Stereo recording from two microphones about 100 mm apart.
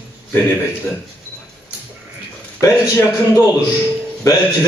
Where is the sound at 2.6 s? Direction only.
35° left (ahead or behind).